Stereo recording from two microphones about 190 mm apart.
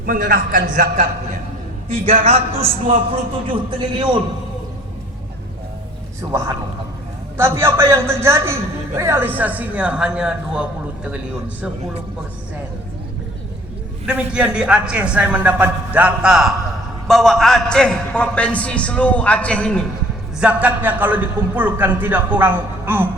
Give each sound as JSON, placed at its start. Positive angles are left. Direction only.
{"t": 0.0, "sound": "a man's voice", "side_deg": -50}
{"t": 1.9, "sound": "a man's voice", "side_deg": -30}
{"t": 6.2, "sound": "a man's voice", "side_deg": -20}
{"t": 14.1, "sound": "a man's voice", "side_deg": -5}
{"t": 20.4, "sound": "a man's voice", "side_deg": -5}